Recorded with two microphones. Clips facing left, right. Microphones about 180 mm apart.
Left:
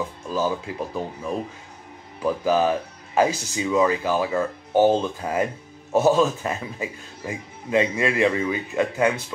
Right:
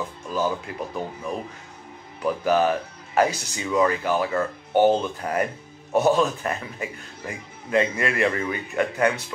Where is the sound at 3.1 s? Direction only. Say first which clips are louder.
Left 1 dB; 10° left (ahead or behind).